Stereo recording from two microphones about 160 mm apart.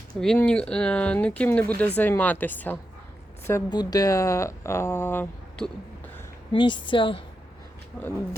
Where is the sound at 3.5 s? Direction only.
20° left (ahead or behind).